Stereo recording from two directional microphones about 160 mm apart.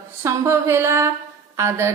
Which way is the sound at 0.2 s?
15° right (ahead or behind).